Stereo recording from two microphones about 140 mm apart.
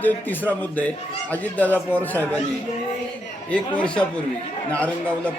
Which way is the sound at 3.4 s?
10° left (ahead or behind).